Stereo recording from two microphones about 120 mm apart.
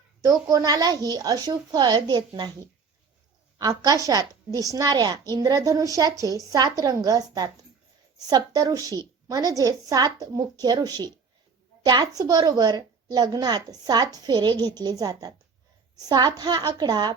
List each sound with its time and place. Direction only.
0.4 s a woman's voice: 30° right (ahead or behind)